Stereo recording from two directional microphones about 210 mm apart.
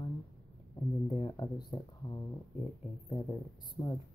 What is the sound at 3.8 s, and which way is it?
Speech, 20° left (ahead or behind).